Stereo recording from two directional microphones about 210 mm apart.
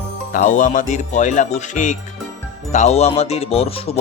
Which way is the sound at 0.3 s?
35° left (ahead or behind).